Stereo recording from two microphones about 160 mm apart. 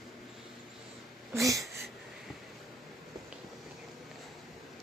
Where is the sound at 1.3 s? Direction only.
20° right (ahead or behind).